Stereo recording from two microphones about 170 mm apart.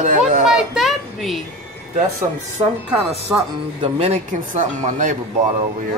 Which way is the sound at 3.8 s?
40° right (ahead or behind).